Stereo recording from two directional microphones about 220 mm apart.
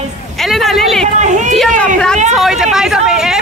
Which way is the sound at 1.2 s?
35° right (ahead or behind).